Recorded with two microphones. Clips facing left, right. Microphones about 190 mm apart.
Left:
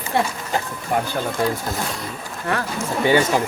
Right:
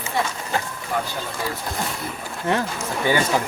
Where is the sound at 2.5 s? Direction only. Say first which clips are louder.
Right 2 dB; 20° right (ahead or behind).